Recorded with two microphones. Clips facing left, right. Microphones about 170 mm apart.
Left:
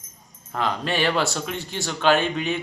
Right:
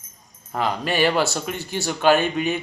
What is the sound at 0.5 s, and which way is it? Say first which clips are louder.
Speech: right 2 dB; 5° right (ahead or behind).